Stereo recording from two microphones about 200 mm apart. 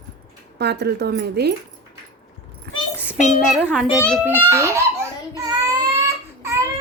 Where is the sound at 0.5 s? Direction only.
55° right (ahead or behind).